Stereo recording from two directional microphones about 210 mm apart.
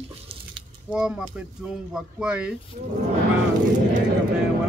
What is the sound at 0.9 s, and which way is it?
Speech, 5° right (ahead or behind).